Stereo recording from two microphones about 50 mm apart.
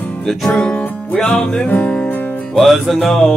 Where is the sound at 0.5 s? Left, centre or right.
Left.